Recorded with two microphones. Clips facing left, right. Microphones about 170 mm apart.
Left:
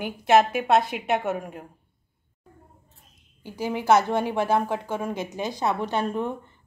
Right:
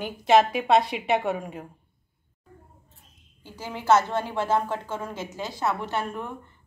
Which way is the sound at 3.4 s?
15° left (ahead or behind).